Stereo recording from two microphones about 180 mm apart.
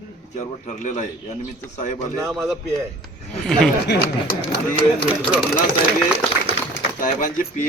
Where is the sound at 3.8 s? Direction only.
60° left (ahead or behind).